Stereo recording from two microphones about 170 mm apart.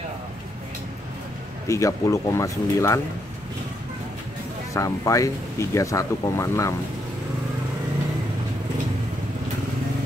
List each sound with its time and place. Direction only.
1.7 s speech: 20° left (ahead or behind)
4.7 s speech: 20° left (ahead or behind)